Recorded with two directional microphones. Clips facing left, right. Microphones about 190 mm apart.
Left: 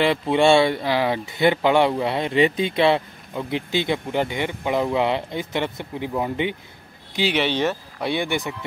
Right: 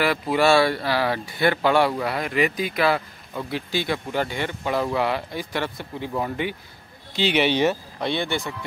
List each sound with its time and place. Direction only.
0.0 s speech: 25° left (ahead or behind)
7.3 s speech: 10° right (ahead or behind)
8.0 s speech: 10° left (ahead or behind)